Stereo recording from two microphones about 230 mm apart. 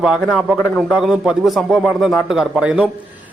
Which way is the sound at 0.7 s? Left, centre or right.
Centre.